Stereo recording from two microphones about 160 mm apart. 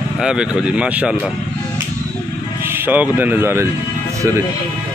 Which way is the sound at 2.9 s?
10° right (ahead or behind).